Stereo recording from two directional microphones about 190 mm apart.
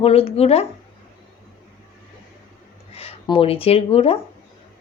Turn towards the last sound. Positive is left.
turn(degrees=30)  # may be behind; listen again after turning